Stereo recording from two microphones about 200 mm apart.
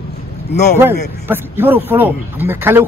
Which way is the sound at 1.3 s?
10° right (ahead or behind).